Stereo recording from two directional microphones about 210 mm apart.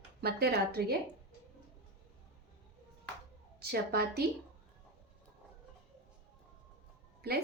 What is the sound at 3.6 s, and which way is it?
Speech, 50° right (ahead or behind).